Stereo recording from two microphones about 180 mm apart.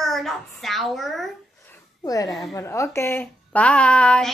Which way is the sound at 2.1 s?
20° left (ahead or behind).